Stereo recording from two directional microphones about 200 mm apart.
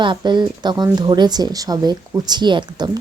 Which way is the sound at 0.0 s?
25° right (ahead or behind).